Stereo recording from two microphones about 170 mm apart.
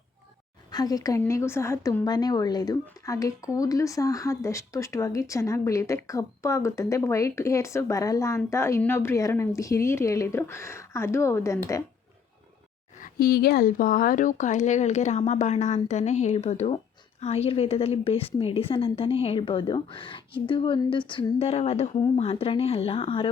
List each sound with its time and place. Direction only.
0.7 s speech: 20° left (ahead or behind)
13.0 s a woman's voice: 65° left (ahead or behind); by 23.3 s 35° left (ahead or behind)